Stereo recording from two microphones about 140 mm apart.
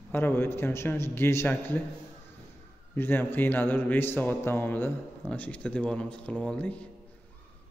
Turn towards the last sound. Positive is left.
turn(degrees=10)  # may be behind; listen again after turning